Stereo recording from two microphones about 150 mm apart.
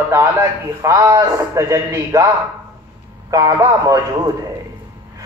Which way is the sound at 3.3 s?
25° right (ahead or behind).